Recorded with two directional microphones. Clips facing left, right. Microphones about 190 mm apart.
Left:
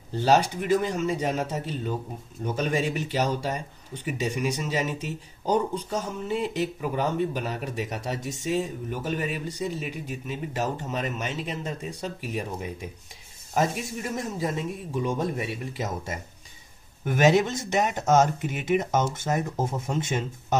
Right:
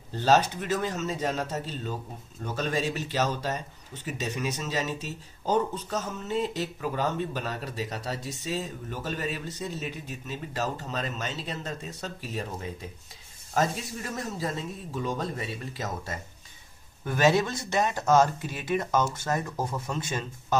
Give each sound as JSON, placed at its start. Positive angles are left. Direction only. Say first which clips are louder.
{"t": 0.1, "sound": "speech", "louder": "left 1 dB", "side_deg": 10}